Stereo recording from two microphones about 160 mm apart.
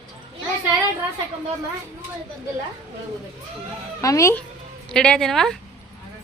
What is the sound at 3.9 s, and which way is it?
Speech, 20° left (ahead or behind).